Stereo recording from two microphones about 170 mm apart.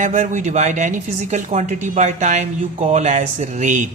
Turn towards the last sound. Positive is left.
turn(degrees=-45)  # may be behind; listen again after turning